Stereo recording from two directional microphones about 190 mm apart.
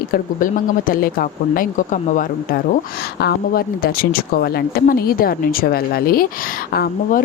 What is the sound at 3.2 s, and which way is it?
A woman's voice, 55° left (ahead or behind).